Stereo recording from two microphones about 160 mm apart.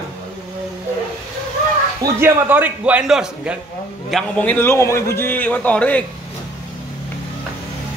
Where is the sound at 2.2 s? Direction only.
10° right (ahead or behind).